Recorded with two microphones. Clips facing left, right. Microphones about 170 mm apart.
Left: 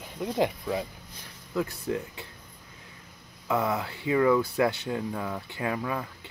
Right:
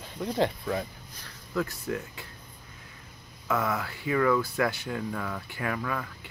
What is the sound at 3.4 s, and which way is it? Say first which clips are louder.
Speech: left 2 dB; 20° left (ahead or behind).